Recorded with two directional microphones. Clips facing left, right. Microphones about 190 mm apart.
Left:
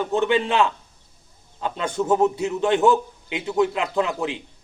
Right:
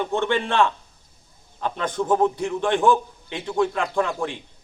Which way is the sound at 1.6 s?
10° left (ahead or behind).